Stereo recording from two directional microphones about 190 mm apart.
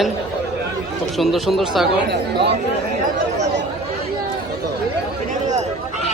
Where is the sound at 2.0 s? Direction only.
60° right (ahead or behind).